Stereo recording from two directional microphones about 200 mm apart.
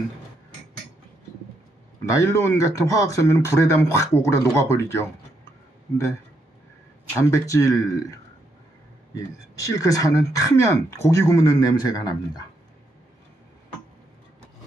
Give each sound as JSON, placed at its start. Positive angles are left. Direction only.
{"t": 2.0, "sound": "speech", "side_deg": 15}
{"t": 7.2, "sound": "speech", "side_deg": 15}